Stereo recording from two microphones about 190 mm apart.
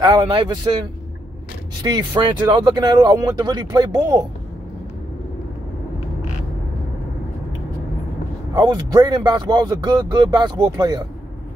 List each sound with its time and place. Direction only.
0.0 s speech: 25° right (ahead or behind)
1.8 s speech: 20° right (ahead or behind)
8.5 s speech: 20° right (ahead or behind)